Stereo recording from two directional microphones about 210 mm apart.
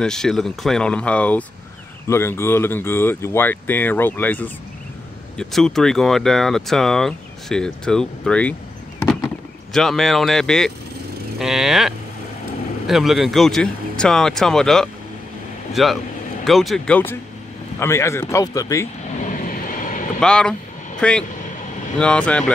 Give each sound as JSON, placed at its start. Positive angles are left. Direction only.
{"t": 0.0, "sound": "speech", "side_deg": 0}
{"t": 9.7, "sound": "a man's voice", "side_deg": 0}
{"t": 19.2, "sound": "vehicle", "side_deg": 40}
{"t": 20.2, "sound": "speech", "side_deg": 5}